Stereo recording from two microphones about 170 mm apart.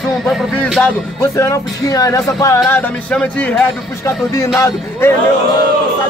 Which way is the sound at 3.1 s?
5° left (ahead or behind).